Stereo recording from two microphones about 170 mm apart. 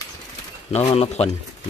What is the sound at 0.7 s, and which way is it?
Speech, 40° left (ahead or behind).